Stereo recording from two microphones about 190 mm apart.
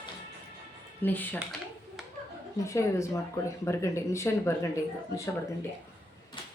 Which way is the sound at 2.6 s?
15° left (ahead or behind).